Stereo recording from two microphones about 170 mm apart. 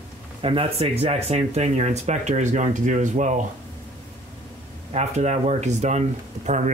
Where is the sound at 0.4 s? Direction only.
35° right (ahead or behind).